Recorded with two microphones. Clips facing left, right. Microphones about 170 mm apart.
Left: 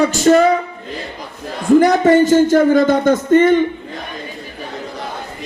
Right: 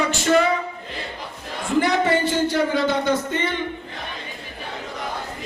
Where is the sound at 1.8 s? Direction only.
45° left (ahead or behind).